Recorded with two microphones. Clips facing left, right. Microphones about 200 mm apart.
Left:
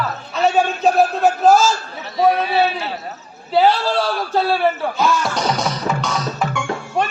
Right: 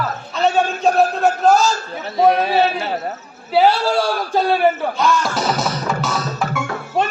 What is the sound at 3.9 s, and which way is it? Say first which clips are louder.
Speech: right 1 dB; 15° right (ahead or behind).